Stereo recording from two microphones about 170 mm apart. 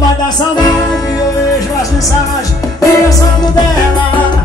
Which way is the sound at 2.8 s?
20° left (ahead or behind).